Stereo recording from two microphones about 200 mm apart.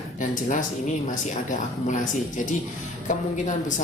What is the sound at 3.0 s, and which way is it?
Speech, 40° left (ahead or behind).